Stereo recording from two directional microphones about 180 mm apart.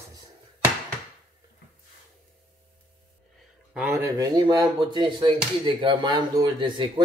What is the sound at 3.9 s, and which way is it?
Speech, 20° right (ahead or behind).